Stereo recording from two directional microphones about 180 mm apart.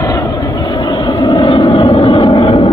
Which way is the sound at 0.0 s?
20° left (ahead or behind).